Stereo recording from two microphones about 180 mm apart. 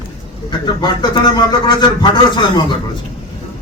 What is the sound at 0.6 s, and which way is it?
A man's voice, 25° left (ahead or behind).